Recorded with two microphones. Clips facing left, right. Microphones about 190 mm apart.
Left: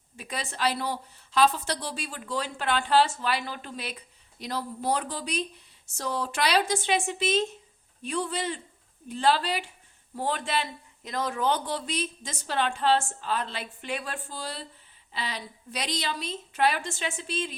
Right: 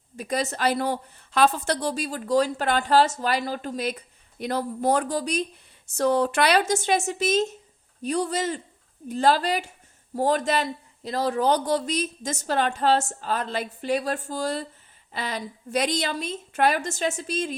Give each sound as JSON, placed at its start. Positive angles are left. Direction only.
{"t": 0.2, "sound": "a woman's voice", "side_deg": -40}
{"t": 6.0, "sound": "a woman's voice", "side_deg": -55}